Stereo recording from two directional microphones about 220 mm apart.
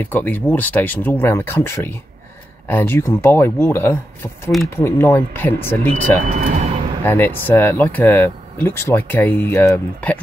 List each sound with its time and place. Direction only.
0.0 s speech: 10° left (ahead or behind)
6.2 s speech: 35° right (ahead or behind)
7.1 s speech: 10° left (ahead or behind)